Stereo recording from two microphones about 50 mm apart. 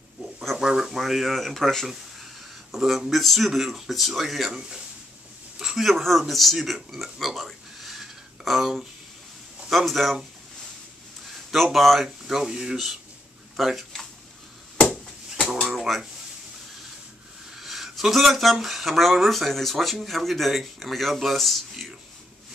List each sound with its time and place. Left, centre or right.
0.6 s speech: centre
2.7 s speech: centre
4.6 s speech: centre
11.5 s speech: centre
15.6 s a sound: centre
17.5 s speech: centre